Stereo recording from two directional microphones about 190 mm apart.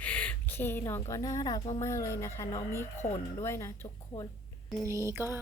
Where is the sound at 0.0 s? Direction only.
5° left (ahead or behind).